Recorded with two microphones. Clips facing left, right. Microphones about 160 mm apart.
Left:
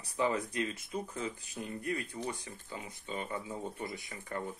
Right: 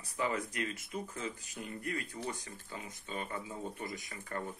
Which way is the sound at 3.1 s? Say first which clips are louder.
Left 2 dB; 20° left (ahead or behind).